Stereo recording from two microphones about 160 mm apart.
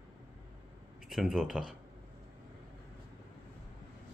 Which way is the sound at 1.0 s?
5° right (ahead or behind).